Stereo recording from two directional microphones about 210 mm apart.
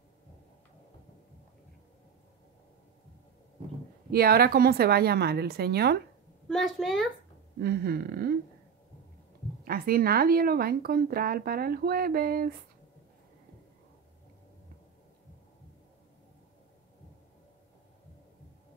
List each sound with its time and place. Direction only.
4.1 s speech: 45° right (ahead or behind)
6.5 s a woman's voice: centre (ahead or behind)
7.6 s speech: 45° right (ahead or behind)
9.7 s speech: 45° right (ahead or behind)